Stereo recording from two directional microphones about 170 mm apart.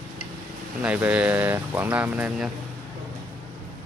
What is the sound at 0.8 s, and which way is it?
Speech, 10° right (ahead or behind).